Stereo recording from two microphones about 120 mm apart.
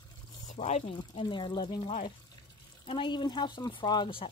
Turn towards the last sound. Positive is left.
turn(degrees=45)  # may be behind; listen again after turning